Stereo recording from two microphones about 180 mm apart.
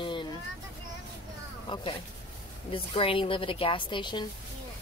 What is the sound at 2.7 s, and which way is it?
A woman's voice, 30° left (ahead or behind).